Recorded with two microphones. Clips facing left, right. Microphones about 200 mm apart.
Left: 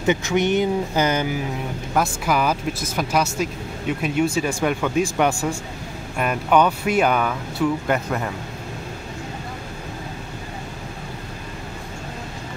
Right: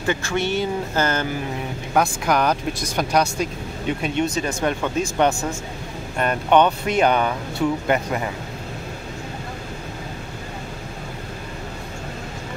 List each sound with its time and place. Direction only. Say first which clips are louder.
0.0 s speech: left 3 dB; 20° left (ahead or behind); by 8.3 s 5° right (ahead or behind)